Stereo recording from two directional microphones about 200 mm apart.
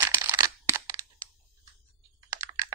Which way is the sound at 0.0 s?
15° right (ahead or behind).